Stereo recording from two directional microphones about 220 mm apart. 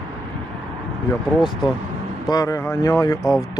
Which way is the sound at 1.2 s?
Centre (ahead or behind).